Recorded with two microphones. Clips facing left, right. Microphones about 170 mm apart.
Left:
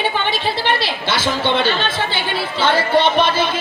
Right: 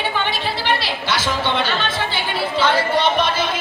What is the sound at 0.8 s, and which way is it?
Speech, 25° left (ahead or behind).